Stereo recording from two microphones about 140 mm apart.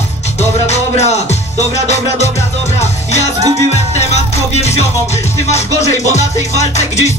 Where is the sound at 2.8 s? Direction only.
50° left (ahead or behind).